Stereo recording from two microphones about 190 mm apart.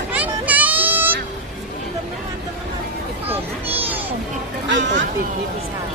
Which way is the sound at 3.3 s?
10° right (ahead or behind).